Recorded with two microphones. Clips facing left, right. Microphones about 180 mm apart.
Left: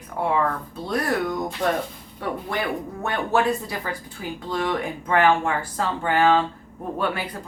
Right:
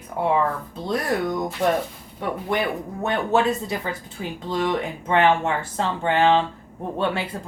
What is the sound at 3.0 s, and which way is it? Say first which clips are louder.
Speech: right 2 dB; 20° right (ahead or behind).